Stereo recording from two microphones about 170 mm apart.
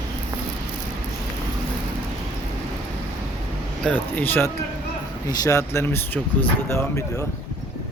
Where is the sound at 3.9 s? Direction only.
10° left (ahead or behind).